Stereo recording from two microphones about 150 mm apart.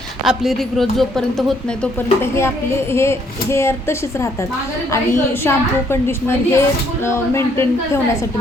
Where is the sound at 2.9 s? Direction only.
15° left (ahead or behind).